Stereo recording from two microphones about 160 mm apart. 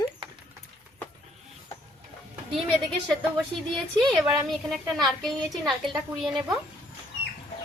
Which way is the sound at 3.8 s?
Centre (ahead or behind).